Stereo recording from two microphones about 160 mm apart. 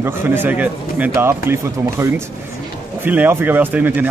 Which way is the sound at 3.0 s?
10° right (ahead or behind).